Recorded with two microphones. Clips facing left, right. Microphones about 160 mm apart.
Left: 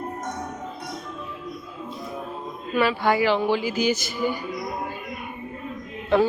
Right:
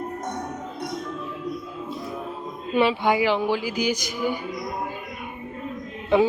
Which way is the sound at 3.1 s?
15° right (ahead or behind).